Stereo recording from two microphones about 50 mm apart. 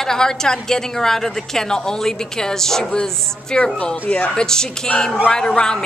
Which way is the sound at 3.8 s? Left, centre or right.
Left.